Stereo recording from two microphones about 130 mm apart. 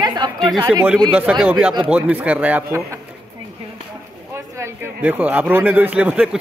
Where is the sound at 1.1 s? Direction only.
10° right (ahead or behind).